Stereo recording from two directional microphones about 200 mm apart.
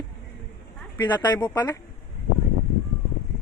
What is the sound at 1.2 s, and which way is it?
Speech, 15° left (ahead or behind).